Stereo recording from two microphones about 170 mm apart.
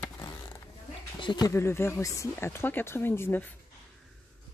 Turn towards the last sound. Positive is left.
turn(degrees=10)  # may be behind; listen again after turning